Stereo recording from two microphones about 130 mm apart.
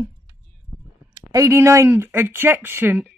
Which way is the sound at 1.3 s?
20° right (ahead or behind).